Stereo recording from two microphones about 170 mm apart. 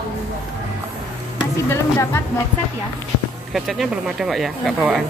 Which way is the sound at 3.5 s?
Centre (ahead or behind).